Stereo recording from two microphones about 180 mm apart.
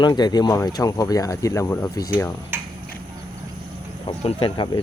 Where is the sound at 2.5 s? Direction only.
10° right (ahead or behind).